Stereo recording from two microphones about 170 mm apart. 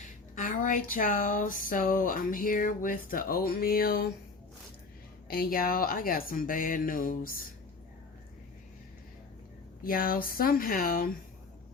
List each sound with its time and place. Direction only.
0.3 s speech: 50° left (ahead or behind)
5.3 s speech: 60° left (ahead or behind)
9.8 s speech: 55° left (ahead or behind)